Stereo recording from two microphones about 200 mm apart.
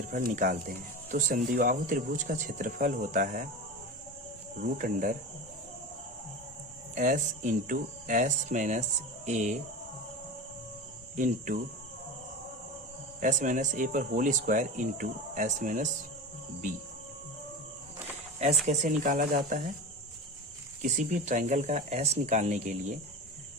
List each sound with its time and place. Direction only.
0.1 s speech: 40° right (ahead or behind)
4.6 s speech: 40° right (ahead or behind)
6.9 s speech: 40° right (ahead or behind)
11.2 s speech: 40° right (ahead or behind)
13.1 s speech: 40° right (ahead or behind)
18.7 s speech: 35° right (ahead or behind)
20.8 s speech: 35° right (ahead or behind)